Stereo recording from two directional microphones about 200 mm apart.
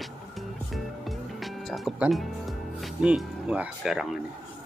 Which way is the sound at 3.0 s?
5° right (ahead or behind).